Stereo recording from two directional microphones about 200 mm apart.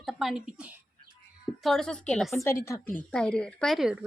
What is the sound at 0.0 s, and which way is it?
A woman's voice, centre (ahead or behind).